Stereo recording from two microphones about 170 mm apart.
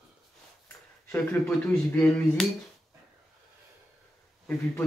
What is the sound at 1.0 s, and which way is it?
Speech, 5° left (ahead or behind).